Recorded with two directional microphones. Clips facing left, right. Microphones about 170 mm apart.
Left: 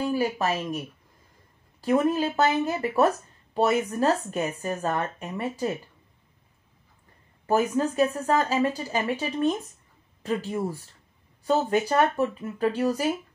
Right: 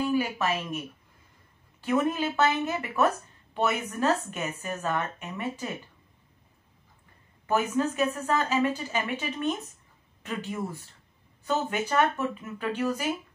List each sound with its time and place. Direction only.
0.1 s speech: 35° left (ahead or behind)
7.4 s speech: 35° left (ahead or behind)